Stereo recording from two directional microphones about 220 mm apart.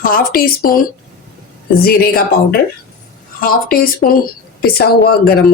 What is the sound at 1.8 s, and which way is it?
A woman's voice, 45° left (ahead or behind).